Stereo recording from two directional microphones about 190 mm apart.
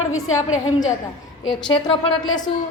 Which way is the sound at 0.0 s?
90° left.